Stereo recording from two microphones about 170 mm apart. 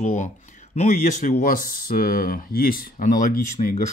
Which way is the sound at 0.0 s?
45° left (ahead or behind).